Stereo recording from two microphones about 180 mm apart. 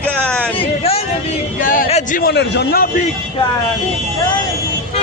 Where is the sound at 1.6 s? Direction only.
50° left (ahead or behind).